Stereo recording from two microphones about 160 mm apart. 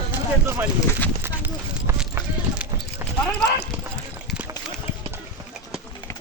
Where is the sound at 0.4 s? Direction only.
15° right (ahead or behind).